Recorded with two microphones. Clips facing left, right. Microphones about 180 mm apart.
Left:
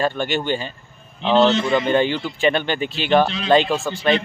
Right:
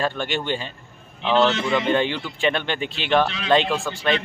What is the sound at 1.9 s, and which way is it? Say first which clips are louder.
A man's voice: left 3 dB; centre (ahead or behind).